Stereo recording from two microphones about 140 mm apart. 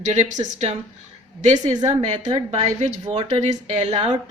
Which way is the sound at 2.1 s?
55° right (ahead or behind).